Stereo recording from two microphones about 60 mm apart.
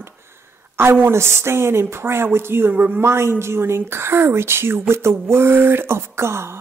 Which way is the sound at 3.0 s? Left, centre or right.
Right.